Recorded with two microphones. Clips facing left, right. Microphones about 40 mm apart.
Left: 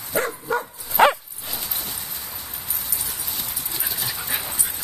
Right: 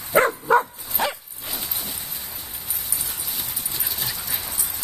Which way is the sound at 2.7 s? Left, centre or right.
Centre.